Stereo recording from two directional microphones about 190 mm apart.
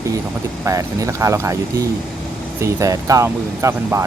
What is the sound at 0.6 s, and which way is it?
Speech, 15° right (ahead or behind).